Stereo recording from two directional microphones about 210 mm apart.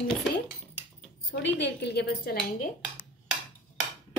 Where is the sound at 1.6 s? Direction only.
55° left (ahead or behind).